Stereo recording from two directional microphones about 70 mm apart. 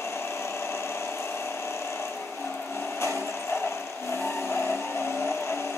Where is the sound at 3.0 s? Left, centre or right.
Left.